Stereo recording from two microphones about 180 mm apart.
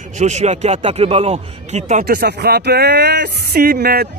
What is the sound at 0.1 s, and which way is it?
Speech, 40° right (ahead or behind).